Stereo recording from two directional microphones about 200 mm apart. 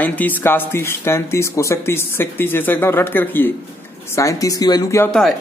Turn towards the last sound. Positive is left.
turn(degrees=15)  # may be behind; listen again after turning